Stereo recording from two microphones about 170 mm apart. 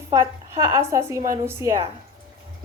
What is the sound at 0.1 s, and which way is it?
A woman's voice, 20° right (ahead or behind).